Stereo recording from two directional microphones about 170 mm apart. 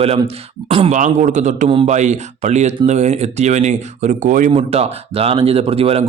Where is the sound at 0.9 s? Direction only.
45° right (ahead or behind).